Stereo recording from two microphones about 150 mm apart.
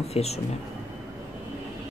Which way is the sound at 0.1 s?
45° left (ahead or behind).